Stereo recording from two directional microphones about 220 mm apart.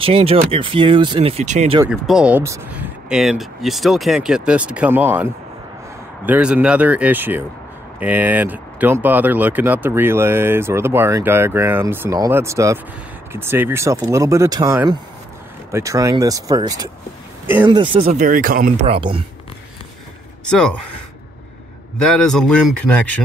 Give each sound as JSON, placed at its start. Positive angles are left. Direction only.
{"t": 0.0, "sound": "speech", "side_deg": -25}
{"t": 1.9, "sound": "speech", "side_deg": -5}
{"t": 18.9, "sound": "speech", "side_deg": -25}
{"t": 20.4, "sound": "speech", "side_deg": 5}
{"t": 21.9, "sound": "speech", "side_deg": 0}